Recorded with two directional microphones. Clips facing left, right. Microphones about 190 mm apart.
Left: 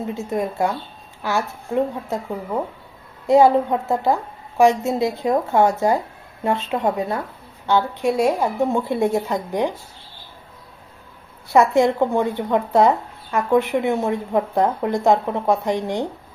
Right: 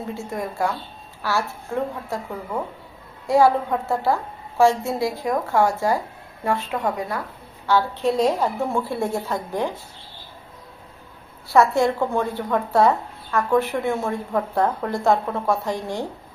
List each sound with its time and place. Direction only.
0.0 s a woman's voice: 20° left (ahead or behind)
11.5 s a woman's voice: 15° left (ahead or behind)